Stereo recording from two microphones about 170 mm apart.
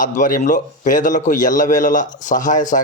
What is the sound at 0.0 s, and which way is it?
A man's voice, 50° left (ahead or behind).